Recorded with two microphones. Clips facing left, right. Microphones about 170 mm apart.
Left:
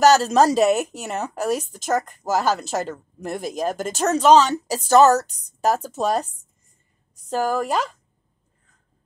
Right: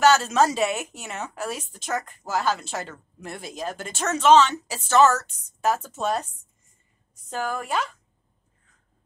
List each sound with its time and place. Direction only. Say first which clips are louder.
0.0 s speech: left 4 dB; 40° left (ahead or behind)